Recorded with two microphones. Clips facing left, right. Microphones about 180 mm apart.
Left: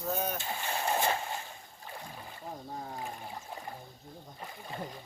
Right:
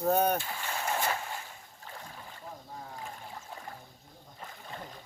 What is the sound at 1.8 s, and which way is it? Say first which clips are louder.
Splash: left 1 dB; 15° left (ahead or behind).